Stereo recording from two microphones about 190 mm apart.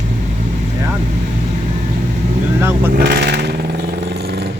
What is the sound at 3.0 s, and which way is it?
Speech, 60° right (ahead or behind).